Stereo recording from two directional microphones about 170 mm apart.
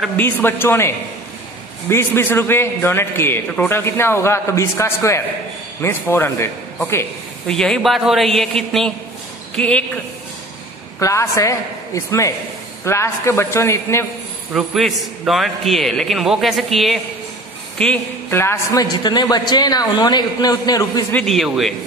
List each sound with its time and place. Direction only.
0.2 s a man's voice: 10° left (ahead or behind)
7.5 s a man's voice: 5° left (ahead or behind)
11.0 s a man's voice: 20° left (ahead or behind)
14.5 s a man's voice: centre (ahead or behind); by 21.0 s 20° left (ahead or behind)
21.1 s a man's voice: 5° left (ahead or behind)